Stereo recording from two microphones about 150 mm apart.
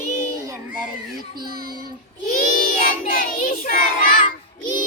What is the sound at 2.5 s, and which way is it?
Child singing, 65° left (ahead or behind).